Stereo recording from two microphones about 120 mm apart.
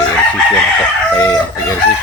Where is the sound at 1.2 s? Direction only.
20° left (ahead or behind).